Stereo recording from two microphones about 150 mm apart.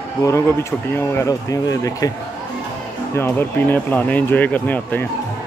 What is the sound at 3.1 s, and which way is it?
Speech, 15° left (ahead or behind).